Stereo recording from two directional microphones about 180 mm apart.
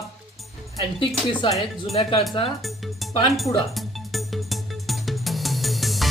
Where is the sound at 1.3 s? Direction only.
25° left (ahead or behind).